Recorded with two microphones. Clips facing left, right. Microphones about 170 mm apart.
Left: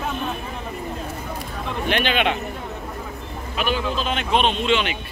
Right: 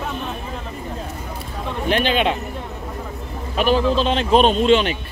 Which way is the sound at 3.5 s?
35° right (ahead or behind).